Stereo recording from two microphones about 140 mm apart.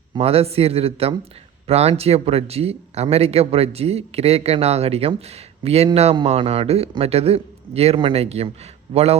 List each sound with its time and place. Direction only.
0.1 s a man's voice: 45° right (ahead or behind)